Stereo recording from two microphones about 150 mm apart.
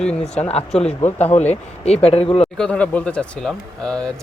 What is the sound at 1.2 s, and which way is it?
Speech, 45° left (ahead or behind).